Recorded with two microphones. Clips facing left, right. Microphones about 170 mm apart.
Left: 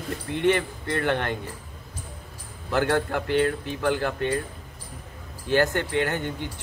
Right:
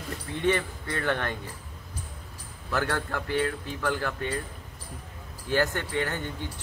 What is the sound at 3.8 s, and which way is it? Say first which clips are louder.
Speech: left 5 dB; 20° left (ahead or behind).